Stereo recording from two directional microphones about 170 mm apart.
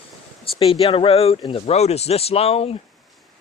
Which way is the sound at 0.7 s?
35° left (ahead or behind).